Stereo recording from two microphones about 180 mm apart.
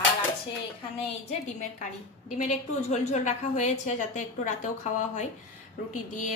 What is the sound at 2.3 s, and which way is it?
A woman's voice, 40° left (ahead or behind).